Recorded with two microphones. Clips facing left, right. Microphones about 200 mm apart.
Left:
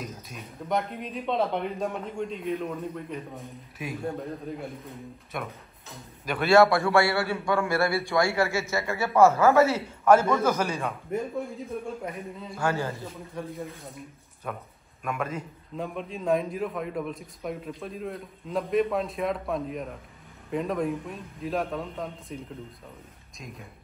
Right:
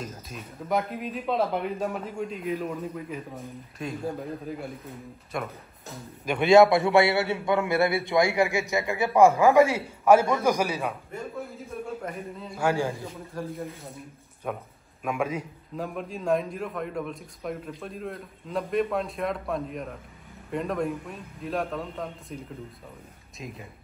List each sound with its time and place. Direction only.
0.0 s a man's voice: centre (ahead or behind)
6.4 s a man's voice: 15° right (ahead or behind); by 22.4 s centre (ahead or behind)